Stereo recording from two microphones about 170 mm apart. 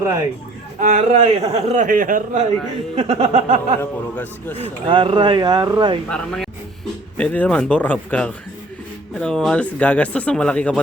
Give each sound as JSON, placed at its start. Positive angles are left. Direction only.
{"t": 0.0, "sound": "a man's voice", "side_deg": -15}
{"t": 0.8, "sound": "speech", "side_deg": -50}
{"t": 2.9, "sound": "music", "side_deg": -35}
{"t": 3.8, "sound": "speech", "side_deg": 10}
{"t": 4.5, "sound": "speech", "side_deg": -30}
{"t": 6.1, "sound": "speech", "side_deg": 5}